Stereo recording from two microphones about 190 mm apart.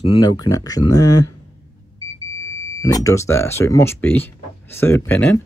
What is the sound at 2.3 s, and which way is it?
Speech, 15° left (ahead or behind).